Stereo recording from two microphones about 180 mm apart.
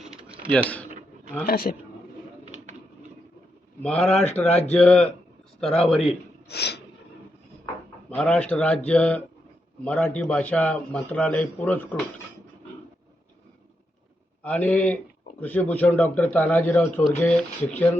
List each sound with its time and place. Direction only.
1.5 s a man's voice: 55° left (ahead or behind)
3.8 s speech: 5° left (ahead or behind)
4.4 s speech: 35° left (ahead or behind)
4.7 s a man's voice: 5° left (ahead or behind)
6.5 s snort: 65° left (ahead or behind)
8.1 s a man's voice: 5° left (ahead or behind)
14.4 s a man's voice: 10° left (ahead or behind)